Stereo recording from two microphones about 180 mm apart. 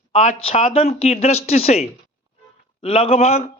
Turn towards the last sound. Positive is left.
turn(degrees=35)  # may be behind; listen again after turning